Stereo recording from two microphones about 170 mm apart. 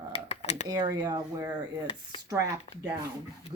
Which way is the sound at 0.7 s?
25° right (ahead or behind).